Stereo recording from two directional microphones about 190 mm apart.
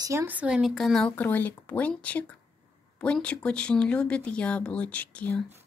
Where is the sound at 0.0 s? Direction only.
15° right (ahead or behind); by 5.4 s 5° left (ahead or behind).